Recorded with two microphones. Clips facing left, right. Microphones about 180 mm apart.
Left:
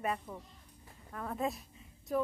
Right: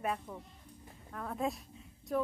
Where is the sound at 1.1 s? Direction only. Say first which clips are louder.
Even; centre (ahead or behind).